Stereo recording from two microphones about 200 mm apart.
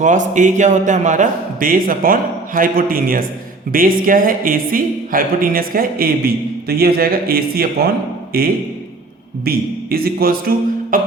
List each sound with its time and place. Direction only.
0.0 s a man's voice: 40° right (ahead or behind)